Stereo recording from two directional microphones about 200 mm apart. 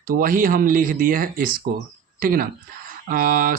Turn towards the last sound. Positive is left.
turn(degrees=-45)  # may be behind; listen again after turning